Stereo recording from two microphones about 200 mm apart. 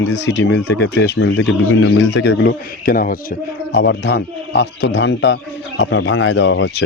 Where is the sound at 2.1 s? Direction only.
60° left (ahead or behind).